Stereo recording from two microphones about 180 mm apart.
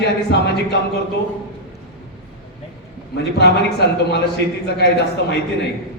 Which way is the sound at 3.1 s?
70° left (ahead or behind).